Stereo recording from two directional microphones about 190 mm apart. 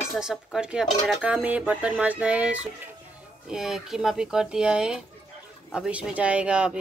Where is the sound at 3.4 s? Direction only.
5° right (ahead or behind).